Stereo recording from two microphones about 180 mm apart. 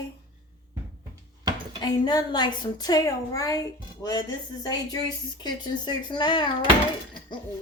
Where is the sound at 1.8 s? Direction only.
25° left (ahead or behind).